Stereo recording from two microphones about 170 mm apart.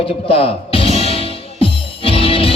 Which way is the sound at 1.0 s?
35° left (ahead or behind).